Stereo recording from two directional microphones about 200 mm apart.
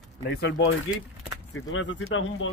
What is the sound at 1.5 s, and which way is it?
Speech, 75° left (ahead or behind).